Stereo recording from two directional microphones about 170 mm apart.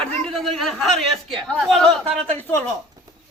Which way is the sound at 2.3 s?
10° left (ahead or behind).